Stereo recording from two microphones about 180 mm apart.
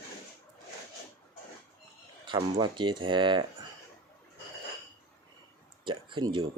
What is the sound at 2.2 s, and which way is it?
Speech, 25° right (ahead or behind).